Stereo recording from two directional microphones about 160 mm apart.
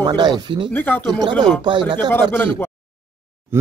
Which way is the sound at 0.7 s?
10° left (ahead or behind).